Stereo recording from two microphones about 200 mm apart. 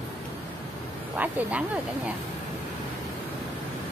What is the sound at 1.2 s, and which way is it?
Speech, 5° right (ahead or behind).